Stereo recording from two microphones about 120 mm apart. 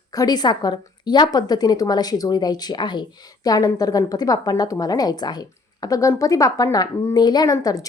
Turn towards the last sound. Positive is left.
turn(degrees=30)  # may be behind; listen again after turning